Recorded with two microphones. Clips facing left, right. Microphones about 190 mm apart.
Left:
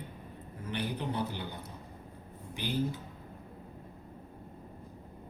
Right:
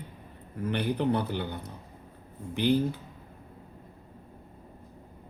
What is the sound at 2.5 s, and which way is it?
Speech, 60° right (ahead or behind).